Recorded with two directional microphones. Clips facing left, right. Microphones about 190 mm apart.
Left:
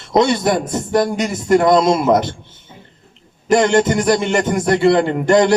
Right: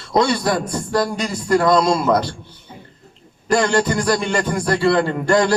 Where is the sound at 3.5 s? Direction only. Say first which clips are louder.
Left 4 dB; 20° left (ahead or behind).